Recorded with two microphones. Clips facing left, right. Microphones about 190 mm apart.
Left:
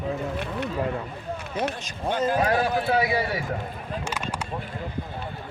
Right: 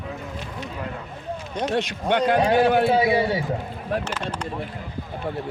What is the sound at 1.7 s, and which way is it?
Speech, 70° right (ahead or behind).